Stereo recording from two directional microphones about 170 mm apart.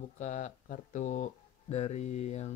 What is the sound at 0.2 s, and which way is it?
Speech, 45° left (ahead or behind).